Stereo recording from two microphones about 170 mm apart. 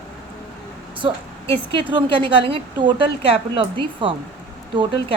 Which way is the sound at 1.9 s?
30° right (ahead or behind).